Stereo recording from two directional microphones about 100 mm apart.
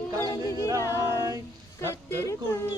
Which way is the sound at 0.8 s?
30° left (ahead or behind).